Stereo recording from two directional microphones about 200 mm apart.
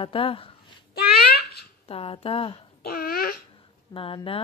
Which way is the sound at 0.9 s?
50° left (ahead or behind).